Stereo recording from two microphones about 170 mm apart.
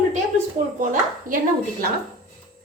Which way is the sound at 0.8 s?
50° right (ahead or behind).